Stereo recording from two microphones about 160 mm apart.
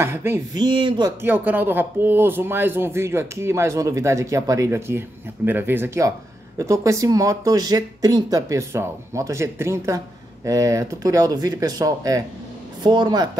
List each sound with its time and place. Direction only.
0.0 s speech: 15° right (ahead or behind)
0.6 s speech: 30° right (ahead or behind)
1.2 s speech: 10° right (ahead or behind); by 13.3 s 25° right (ahead or behind)